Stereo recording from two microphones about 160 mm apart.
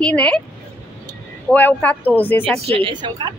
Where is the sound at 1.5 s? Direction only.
10° left (ahead or behind).